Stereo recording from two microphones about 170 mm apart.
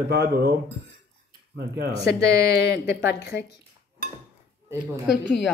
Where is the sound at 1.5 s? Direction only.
70° right (ahead or behind).